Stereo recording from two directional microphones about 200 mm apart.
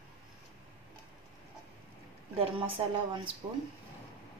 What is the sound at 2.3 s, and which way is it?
Speech, 30° right (ahead or behind).